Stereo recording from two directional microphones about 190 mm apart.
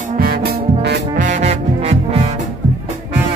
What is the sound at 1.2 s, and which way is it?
Music, 40° right (ahead or behind).